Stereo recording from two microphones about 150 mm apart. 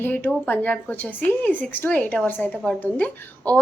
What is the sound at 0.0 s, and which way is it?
Speech, 10° left (ahead or behind).